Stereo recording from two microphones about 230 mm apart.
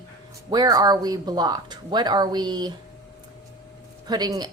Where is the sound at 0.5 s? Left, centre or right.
Centre.